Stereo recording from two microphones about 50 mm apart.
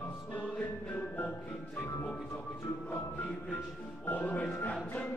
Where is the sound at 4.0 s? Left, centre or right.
Left.